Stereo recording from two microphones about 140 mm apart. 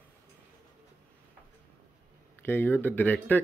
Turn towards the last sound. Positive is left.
turn(degrees=10)  # may be behind; listen again after turning